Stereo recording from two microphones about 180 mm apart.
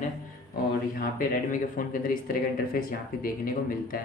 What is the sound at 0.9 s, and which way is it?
Speech, 50° left (ahead or behind).